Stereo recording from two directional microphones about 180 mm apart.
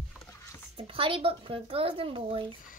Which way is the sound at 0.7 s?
30° right (ahead or behind).